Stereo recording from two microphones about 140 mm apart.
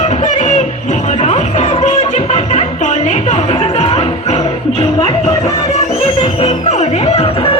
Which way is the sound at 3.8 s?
50° left (ahead or behind).